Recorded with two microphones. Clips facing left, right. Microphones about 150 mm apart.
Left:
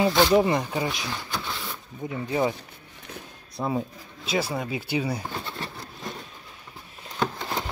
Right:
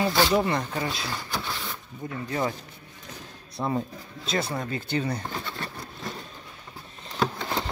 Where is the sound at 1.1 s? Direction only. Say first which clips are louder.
Even; 5° right (ahead or behind).